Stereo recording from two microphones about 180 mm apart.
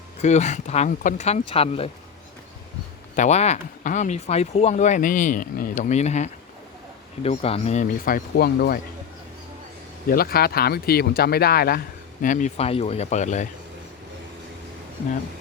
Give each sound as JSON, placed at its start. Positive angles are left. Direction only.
{"t": 0.2, "sound": "speech", "side_deg": 40}
{"t": 3.2, "sound": "speech", "side_deg": 40}
{"t": 10.1, "sound": "speech", "side_deg": 55}
{"t": 12.2, "sound": "speech", "side_deg": 45}